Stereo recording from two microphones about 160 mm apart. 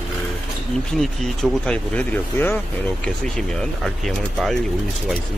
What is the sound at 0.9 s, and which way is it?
Speech, 5° left (ahead or behind).